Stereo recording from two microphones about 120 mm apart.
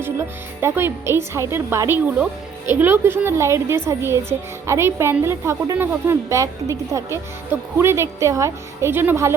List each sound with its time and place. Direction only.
0.0 s speech: 20° right (ahead or behind)